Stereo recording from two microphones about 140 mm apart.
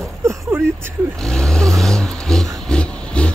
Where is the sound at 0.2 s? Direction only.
20° right (ahead or behind).